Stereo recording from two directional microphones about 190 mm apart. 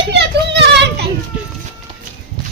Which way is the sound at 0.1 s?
65° right (ahead or behind).